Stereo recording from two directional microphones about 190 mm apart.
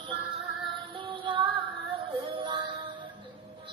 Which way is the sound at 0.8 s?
25° right (ahead or behind).